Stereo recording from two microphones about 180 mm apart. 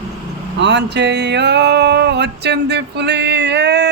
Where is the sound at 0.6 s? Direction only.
75° right (ahead or behind).